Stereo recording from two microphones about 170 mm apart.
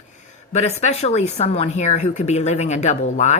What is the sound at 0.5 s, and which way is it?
Speech, 40° left (ahead or behind).